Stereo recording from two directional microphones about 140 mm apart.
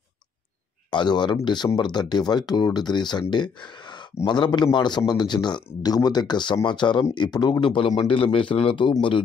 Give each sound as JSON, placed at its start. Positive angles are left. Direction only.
{"t": 0.8, "sound": "speech", "side_deg": 35}